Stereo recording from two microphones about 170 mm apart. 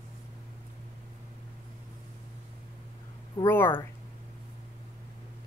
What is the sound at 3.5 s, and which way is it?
Speech, 15° left (ahead or behind).